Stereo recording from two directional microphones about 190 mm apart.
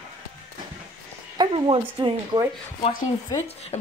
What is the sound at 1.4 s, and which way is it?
Speech, 25° right (ahead or behind).